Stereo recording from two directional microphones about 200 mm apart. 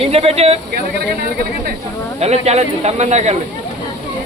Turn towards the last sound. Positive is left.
turn(degrees=-35)  # may be behind; listen again after turning